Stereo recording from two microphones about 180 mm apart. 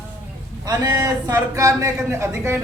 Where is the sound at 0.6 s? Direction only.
20° right (ahead or behind).